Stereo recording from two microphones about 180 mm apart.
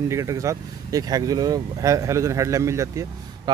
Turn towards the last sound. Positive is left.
turn(degrees=-15)  # may be behind; listen again after turning